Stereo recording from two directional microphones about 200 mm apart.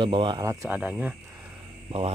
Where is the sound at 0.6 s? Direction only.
5° right (ahead or behind).